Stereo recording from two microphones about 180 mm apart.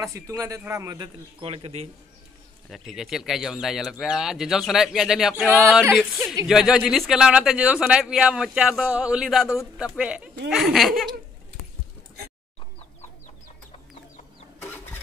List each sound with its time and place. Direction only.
0.0 s a man's voice: 15° right (ahead or behind); by 1.9 s 35° right (ahead or behind)
2.7 s speech: centre (ahead or behind)